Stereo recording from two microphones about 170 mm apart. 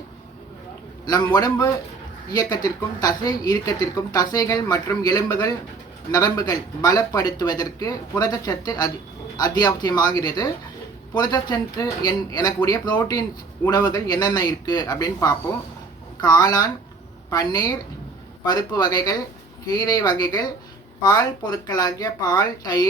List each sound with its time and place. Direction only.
1.0 s speech: 25° left (ahead or behind)